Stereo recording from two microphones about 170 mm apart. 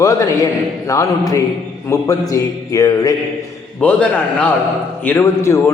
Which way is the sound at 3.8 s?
10° left (ahead or behind).